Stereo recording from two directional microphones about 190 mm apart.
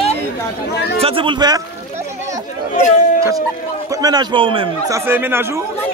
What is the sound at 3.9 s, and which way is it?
Speech, 20° right (ahead or behind).